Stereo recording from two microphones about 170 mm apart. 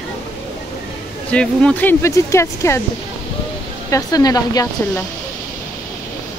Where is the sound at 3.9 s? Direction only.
20° left (ahead or behind).